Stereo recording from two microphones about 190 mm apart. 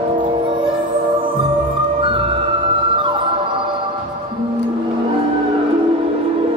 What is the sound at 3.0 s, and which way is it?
Music, 25° right (ahead or behind).